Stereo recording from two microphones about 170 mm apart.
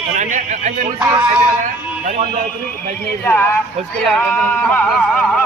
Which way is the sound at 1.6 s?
40° right (ahead or behind).